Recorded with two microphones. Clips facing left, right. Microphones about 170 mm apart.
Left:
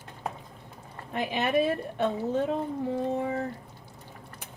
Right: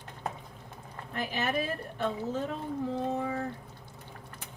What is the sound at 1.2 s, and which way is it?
Speech, 65° left (ahead or behind).